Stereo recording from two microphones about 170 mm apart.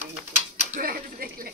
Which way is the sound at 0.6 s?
50° right (ahead or behind).